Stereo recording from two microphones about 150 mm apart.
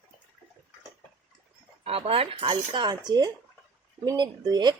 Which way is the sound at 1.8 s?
40° right (ahead or behind).